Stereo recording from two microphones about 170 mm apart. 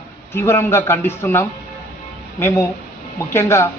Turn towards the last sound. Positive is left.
turn(degrees=15)  # may be behind; listen again after turning